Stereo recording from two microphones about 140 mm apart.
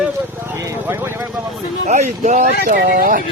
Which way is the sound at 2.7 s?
90° right.